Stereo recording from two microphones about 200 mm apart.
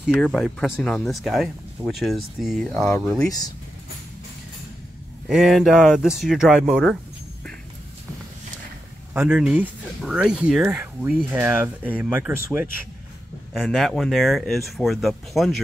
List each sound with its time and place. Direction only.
0.1 s speech: centre (ahead or behind)
3.3 s speech: 20° left (ahead or behind)
5.3 s speech: centre (ahead or behind)
9.1 s speech: 10° right (ahead or behind)
13.5 s speech: centre (ahead or behind)